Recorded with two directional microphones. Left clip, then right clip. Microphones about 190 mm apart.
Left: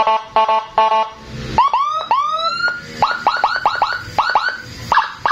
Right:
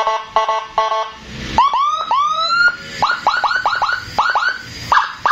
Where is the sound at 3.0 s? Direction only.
25° left (ahead or behind).